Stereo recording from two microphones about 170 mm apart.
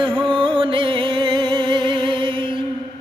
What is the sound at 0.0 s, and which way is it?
Music, 30° right (ahead or behind).